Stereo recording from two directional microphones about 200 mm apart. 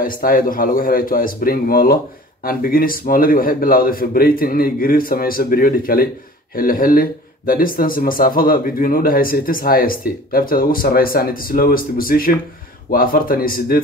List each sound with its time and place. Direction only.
0.0 s speech: 45° left (ahead or behind)